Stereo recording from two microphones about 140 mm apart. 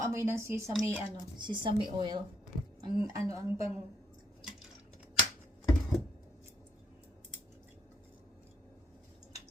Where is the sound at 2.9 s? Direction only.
40° left (ahead or behind).